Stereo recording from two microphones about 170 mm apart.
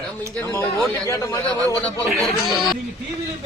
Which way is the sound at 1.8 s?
5° left (ahead or behind).